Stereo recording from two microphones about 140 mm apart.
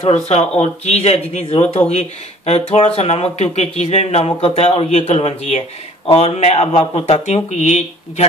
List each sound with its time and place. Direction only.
0.0 s speech: 50° left (ahead or behind)